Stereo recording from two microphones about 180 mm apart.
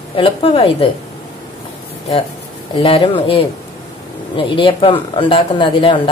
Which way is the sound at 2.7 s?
30° left (ahead or behind).